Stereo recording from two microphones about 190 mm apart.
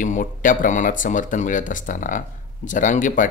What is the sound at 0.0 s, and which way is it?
Speech, 45° left (ahead or behind).